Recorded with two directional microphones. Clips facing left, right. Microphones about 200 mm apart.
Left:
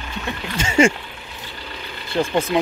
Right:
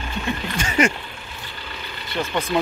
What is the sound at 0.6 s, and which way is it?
Speech, 25° left (ahead or behind).